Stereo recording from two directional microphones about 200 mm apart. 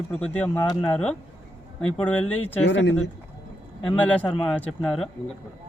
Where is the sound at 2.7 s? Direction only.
60° left (ahead or behind).